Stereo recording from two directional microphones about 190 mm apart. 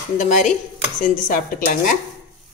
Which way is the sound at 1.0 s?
45° left (ahead or behind).